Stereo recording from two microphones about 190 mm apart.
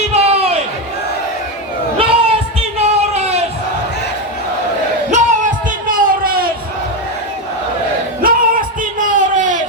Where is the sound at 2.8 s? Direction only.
35° right (ahead or behind).